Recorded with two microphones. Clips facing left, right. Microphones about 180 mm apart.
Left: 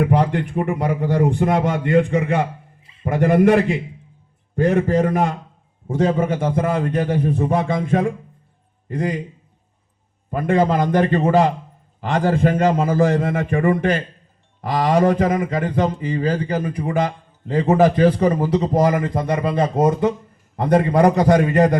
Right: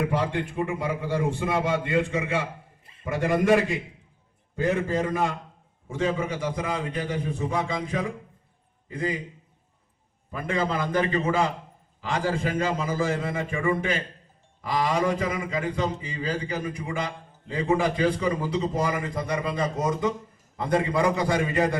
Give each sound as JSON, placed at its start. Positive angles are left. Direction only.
{"t": 0.0, "sound": "a man's voice", "side_deg": 65}
{"t": 10.2, "sound": "a man's voice", "side_deg": 55}
{"t": 18.4, "sound": "a man's voice", "side_deg": 65}
{"t": 18.9, "sound": "a man's voice", "side_deg": 55}